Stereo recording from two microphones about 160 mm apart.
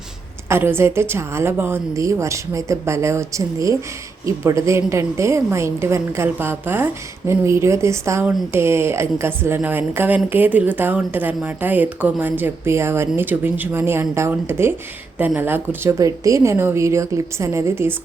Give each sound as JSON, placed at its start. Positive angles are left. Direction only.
{"t": 0.4, "sound": "a woman's voice", "side_deg": -15}